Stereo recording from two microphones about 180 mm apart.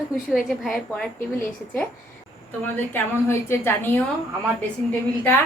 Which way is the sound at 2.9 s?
15° left (ahead or behind).